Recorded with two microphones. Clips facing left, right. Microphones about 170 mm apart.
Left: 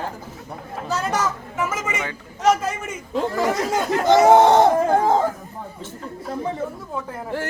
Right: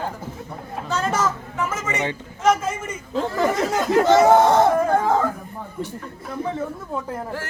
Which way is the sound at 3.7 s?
15° left (ahead or behind).